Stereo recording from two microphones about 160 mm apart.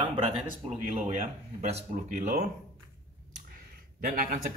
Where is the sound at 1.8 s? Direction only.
55° right (ahead or behind).